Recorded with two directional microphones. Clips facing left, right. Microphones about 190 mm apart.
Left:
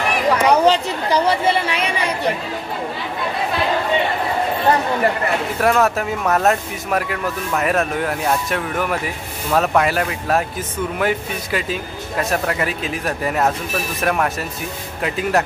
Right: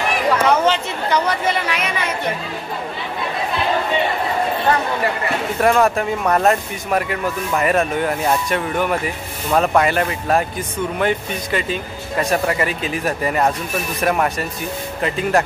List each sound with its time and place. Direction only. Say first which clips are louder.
0.3 s chatter: left 2 dB; 15° left (ahead or behind)
0.7 s a woman's voice: left 2 dB; 35° left (ahead or behind)
5.6 s speech: right 2 dB; centre (ahead or behind)